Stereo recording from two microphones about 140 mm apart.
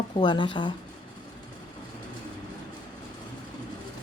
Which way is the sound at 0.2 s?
35° left (ahead or behind).